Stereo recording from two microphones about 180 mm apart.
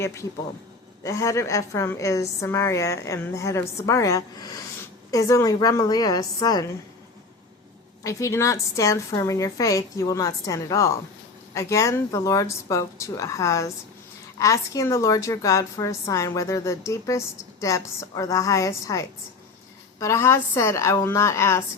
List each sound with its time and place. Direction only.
0.0 s a woman's voice: 15° left (ahead or behind)
8.0 s a woman's voice: 15° left (ahead or behind)